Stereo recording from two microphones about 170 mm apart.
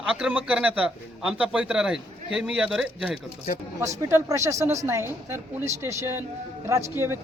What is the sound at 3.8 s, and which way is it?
A man's voice, 15° right (ahead or behind).